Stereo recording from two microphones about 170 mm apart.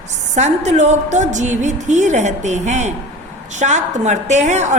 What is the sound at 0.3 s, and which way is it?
A woman's voice, 45° right (ahead or behind).